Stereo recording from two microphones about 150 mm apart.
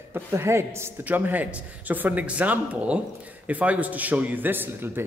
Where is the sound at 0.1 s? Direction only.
15° right (ahead or behind).